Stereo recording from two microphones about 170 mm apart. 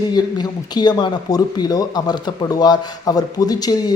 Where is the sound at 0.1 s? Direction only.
25° left (ahead or behind).